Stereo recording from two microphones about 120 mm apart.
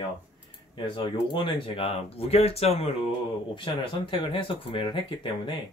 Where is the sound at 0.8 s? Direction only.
45° left (ahead or behind).